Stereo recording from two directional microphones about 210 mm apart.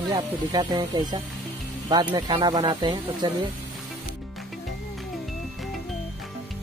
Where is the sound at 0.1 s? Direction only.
20° right (ahead or behind).